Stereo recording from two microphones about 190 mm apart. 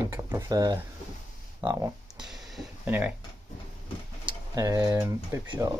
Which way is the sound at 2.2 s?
Centre (ahead or behind).